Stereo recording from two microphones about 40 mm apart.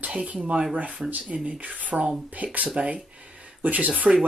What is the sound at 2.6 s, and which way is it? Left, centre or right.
Speech, right.